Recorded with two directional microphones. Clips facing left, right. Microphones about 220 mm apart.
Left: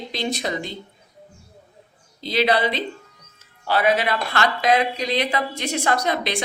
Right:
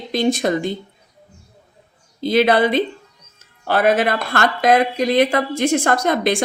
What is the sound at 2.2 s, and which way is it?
Speech, 50° right (ahead or behind).